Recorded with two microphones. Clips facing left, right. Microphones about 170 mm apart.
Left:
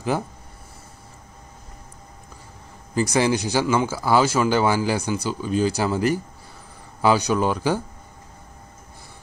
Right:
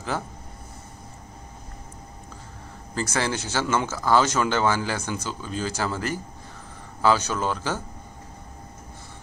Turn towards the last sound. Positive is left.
turn(degrees=15)  # may be behind; listen again after turning